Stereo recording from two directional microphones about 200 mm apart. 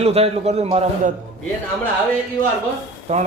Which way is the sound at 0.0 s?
30° right (ahead or behind).